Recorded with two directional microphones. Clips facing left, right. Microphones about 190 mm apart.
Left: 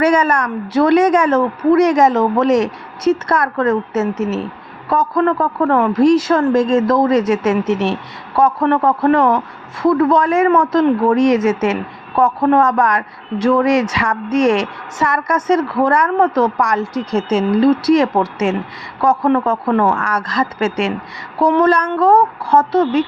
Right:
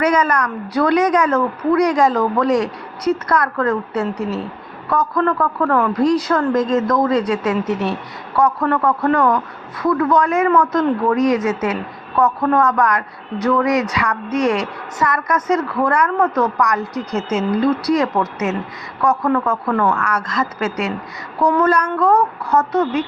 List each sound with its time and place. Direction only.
0.0 s a woman's voice: 30° left (ahead or behind)